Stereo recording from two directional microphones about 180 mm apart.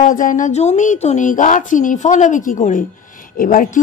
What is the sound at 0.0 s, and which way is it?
A woman's voice, 45° left (ahead or behind).